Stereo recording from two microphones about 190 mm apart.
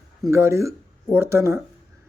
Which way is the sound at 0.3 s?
15° right (ahead or behind).